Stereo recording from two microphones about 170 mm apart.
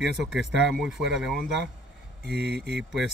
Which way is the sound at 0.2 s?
Centre (ahead or behind).